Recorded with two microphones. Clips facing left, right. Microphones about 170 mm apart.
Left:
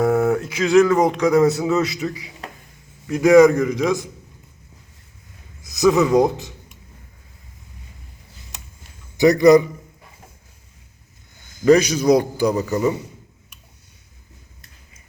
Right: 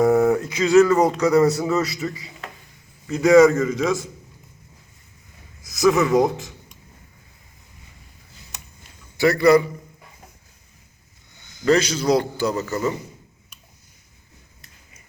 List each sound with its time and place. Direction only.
0.0 s mantra: centre (ahead or behind)
0.6 s a man's voice: 5° right (ahead or behind)
3.1 s a man's voice: 10° left (ahead or behind)
5.8 s a man's voice: centre (ahead or behind)
6.1 s a man's voice: 20° left (ahead or behind)
9.1 s a man's voice: 20° left (ahead or behind)
11.6 s a man's voice: 15° left (ahead or behind)